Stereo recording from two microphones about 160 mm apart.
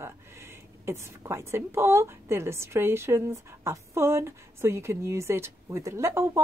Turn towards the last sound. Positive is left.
turn(degrees=-15)  # may be behind; listen again after turning